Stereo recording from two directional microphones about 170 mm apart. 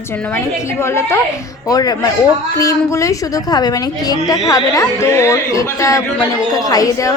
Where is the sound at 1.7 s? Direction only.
25° left (ahead or behind).